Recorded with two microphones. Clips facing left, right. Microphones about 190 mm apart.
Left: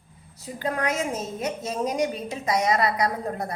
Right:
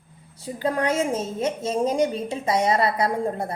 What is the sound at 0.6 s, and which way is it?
A woman's voice, 30° right (ahead or behind).